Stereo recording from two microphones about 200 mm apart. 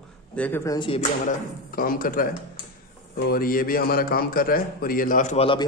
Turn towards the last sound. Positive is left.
turn(degrees=30)  # may be behind; listen again after turning